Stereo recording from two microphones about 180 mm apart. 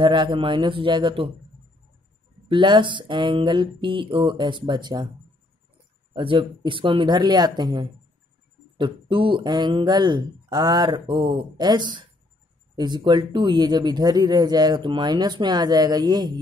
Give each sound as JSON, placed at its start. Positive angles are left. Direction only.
{"t": 0.0, "sound": "speech", "side_deg": -25}
{"t": 2.4, "sound": "speech", "side_deg": -25}
{"t": 6.1, "sound": "speech", "side_deg": -25}